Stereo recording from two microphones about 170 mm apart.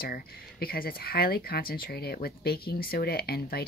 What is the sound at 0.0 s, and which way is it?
Speech, 60° left (ahead or behind).